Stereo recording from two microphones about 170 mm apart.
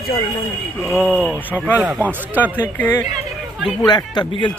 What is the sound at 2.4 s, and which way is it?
Speech, 10° left (ahead or behind).